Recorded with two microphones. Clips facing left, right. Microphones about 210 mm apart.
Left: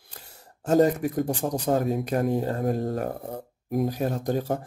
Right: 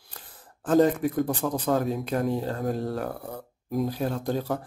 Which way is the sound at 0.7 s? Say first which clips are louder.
Even; 45° left (ahead or behind).